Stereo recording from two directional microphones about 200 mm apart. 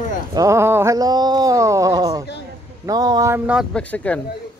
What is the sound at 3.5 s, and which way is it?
Speech, centre (ahead or behind).